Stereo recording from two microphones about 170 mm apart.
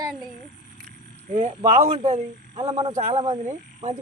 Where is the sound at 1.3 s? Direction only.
45° right (ahead or behind).